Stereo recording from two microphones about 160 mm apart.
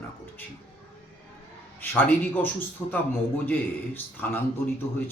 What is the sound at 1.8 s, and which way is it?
Speech, 10° left (ahead or behind).